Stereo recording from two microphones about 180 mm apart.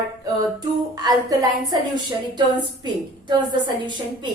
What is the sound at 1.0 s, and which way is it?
A woman's voice, 20° right (ahead or behind).